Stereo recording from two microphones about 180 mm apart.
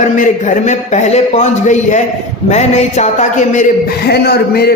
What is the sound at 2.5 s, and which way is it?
Music, 40° left (ahead or behind).